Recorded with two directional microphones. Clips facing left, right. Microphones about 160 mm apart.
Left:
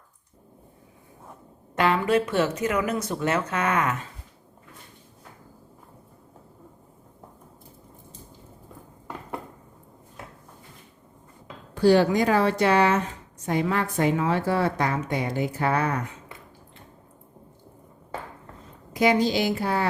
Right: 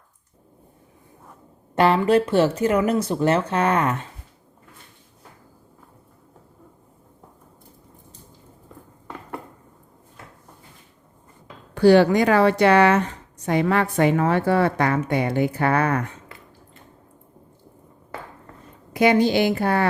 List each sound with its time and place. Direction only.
1.7 s speech: 35° right (ahead or behind)
11.7 s a woman's voice: 70° right (ahead or behind)
18.9 s a woman's voice: 60° right (ahead or behind)